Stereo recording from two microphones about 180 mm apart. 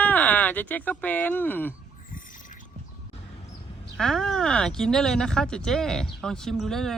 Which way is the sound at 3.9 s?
5° left (ahead or behind).